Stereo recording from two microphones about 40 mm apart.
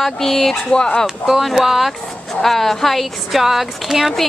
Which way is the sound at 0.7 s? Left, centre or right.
Left.